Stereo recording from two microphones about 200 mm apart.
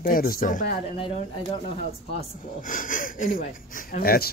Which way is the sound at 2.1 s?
40° left (ahead or behind).